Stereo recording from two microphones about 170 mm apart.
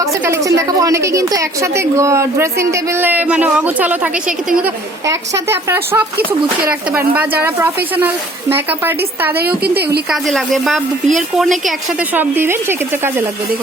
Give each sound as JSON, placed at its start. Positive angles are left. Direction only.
{"t": 0.0, "sound": "a woman's voice", "side_deg": -20}
{"t": 10.1, "sound": "a woman's voice", "side_deg": 0}